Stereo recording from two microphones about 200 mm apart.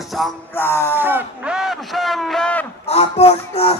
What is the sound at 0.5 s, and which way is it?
Music, 10° left (ahead or behind).